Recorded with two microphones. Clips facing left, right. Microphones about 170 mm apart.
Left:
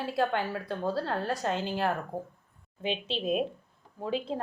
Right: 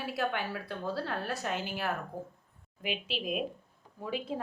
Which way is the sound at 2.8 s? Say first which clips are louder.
Left 4 dB; 25° left (ahead or behind).